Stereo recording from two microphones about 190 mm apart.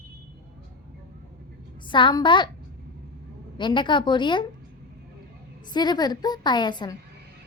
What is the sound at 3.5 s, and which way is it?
Speech, 25° left (ahead or behind).